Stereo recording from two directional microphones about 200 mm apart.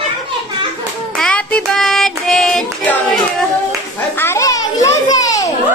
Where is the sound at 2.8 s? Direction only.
10° left (ahead or behind).